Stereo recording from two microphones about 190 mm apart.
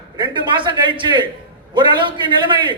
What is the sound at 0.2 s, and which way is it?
A man's voice, 25° right (ahead or behind).